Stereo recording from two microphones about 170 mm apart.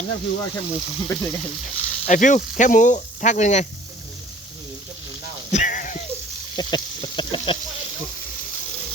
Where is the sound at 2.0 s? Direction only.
50° left (ahead or behind).